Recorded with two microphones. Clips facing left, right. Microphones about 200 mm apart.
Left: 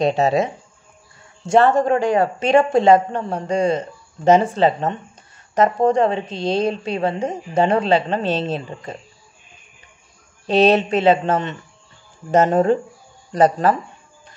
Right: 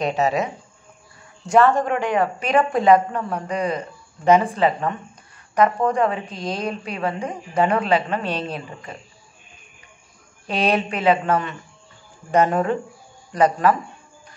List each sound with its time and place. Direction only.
0.0 s a woman's voice: 30° left (ahead or behind)
10.4 s a woman's voice: 25° left (ahead or behind)